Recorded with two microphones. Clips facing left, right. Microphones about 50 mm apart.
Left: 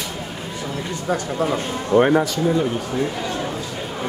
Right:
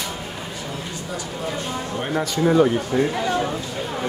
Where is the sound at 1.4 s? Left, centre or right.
Left.